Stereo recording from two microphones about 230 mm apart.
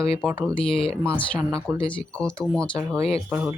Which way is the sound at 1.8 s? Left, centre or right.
Left.